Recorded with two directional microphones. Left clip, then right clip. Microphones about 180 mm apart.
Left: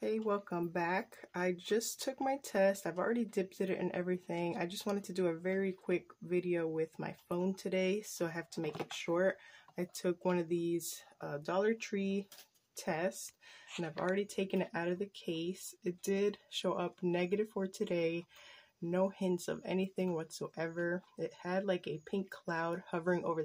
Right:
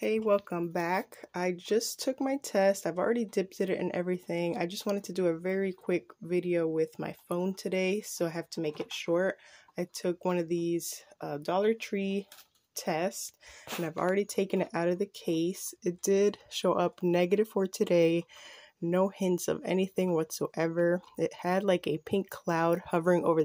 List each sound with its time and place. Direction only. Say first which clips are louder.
0.0 s speech: right 8 dB; 20° right (ahead or behind)
14.0 s speech: right 7 dB; 40° right (ahead or behind)